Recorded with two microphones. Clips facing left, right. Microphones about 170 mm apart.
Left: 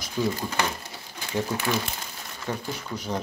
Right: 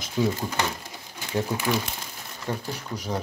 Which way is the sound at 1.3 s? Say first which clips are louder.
Right 1 dB; 10° right (ahead or behind).